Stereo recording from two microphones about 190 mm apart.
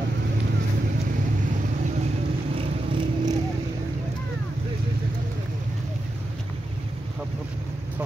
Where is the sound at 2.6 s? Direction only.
25° right (ahead or behind).